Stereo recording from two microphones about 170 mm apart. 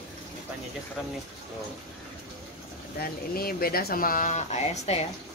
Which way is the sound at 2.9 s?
60° left (ahead or behind).